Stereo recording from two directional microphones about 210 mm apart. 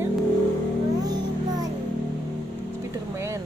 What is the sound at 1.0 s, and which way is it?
Music, 20° right (ahead or behind).